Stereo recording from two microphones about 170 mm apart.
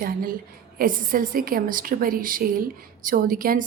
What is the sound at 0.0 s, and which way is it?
A woman's voice, 55° right (ahead or behind).